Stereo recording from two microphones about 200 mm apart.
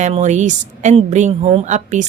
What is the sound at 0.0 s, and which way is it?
A woman's voice, 35° right (ahead or behind).